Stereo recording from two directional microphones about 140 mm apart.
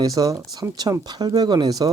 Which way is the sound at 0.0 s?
25° right (ahead or behind).